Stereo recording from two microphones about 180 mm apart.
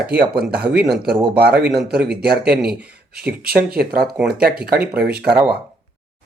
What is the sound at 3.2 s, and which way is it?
Speech, 60° right (ahead or behind).